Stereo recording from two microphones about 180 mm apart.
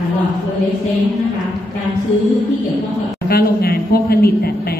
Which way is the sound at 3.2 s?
60° left (ahead or behind).